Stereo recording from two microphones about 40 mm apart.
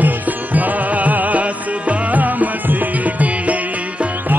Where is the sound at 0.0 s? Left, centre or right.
Right.